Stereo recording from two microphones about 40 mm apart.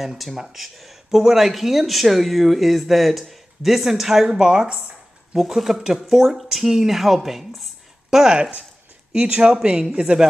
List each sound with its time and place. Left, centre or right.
0.2 s speech: centre
5.5 s speech: centre
9.1 s speech: right